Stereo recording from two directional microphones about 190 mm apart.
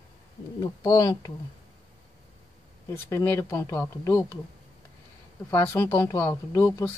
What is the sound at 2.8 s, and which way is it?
Speech, 15° left (ahead or behind).